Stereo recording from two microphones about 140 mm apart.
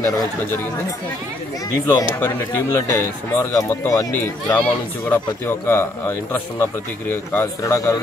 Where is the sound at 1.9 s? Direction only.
25° left (ahead or behind).